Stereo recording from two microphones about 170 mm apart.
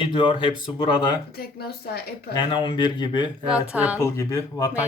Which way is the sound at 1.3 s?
65° left (ahead or behind).